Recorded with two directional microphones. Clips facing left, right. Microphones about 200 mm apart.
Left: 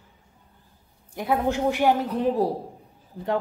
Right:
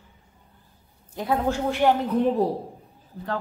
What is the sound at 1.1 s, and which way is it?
Speech, 15° left (ahead or behind).